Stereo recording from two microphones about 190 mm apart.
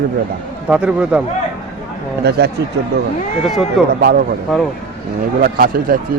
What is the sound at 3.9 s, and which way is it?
Speech, 55° right (ahead or behind).